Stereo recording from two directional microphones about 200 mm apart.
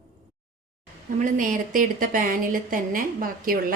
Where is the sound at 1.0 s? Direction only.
40° right (ahead or behind).